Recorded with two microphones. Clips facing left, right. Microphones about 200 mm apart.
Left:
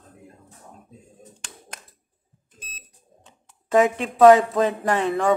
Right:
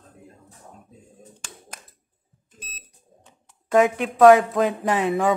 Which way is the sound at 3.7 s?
Centre (ahead or behind).